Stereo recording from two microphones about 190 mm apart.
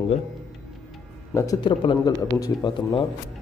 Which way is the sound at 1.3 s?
15° left (ahead or behind).